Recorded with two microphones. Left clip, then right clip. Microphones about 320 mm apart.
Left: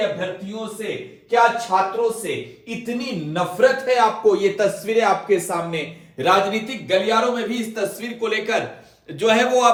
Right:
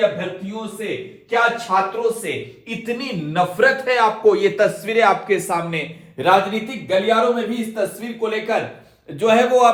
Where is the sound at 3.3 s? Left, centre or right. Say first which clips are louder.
Right 1 dB; right.